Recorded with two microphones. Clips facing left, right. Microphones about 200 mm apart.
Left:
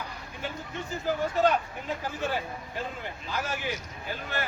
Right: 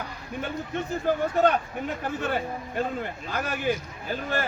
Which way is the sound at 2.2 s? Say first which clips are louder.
Right 2 dB; 55° right (ahead or behind).